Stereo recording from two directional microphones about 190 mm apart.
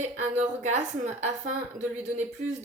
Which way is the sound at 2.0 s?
35° right (ahead or behind).